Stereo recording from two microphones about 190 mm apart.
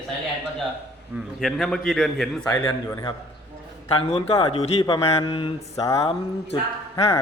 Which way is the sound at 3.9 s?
30° left (ahead or behind).